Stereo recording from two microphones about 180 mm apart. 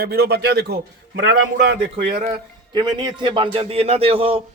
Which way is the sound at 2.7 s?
25° right (ahead or behind).